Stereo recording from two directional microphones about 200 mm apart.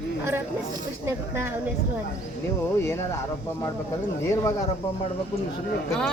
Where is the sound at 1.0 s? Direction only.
10° right (ahead or behind).